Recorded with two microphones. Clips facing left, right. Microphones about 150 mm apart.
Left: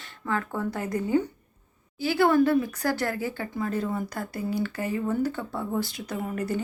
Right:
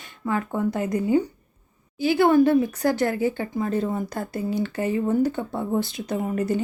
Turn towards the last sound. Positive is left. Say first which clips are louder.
# right 5 dB
turn(degrees=-20)  # may be behind; listen again after turning